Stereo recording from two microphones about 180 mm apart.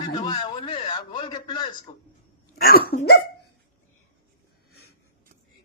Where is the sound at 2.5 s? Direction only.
55° left (ahead or behind).